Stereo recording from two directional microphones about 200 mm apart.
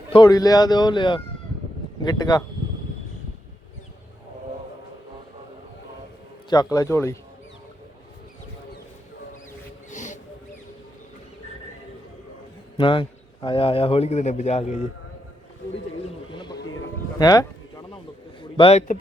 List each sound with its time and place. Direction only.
0.1 s a man's voice: 20° left (ahead or behind)
6.5 s a man's voice: 20° left (ahead or behind)
9.9 s wild animals: 40° left (ahead or behind)
12.8 s a man's voice: 25° left (ahead or behind)
16.3 s a sound: 25° left (ahead or behind)
18.5 s speech: 30° left (ahead or behind)